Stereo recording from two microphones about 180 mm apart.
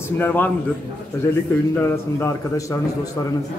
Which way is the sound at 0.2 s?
10° left (ahead or behind).